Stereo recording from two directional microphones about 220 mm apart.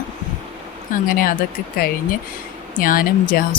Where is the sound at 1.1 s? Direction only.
40° left (ahead or behind).